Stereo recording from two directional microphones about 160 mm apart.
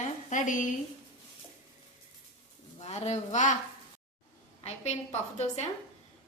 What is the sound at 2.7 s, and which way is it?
Speech, 45° left (ahead or behind).